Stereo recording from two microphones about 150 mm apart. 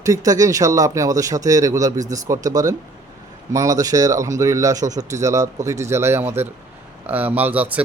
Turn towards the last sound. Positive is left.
turn(degrees=-10)  # may be behind; listen again after turning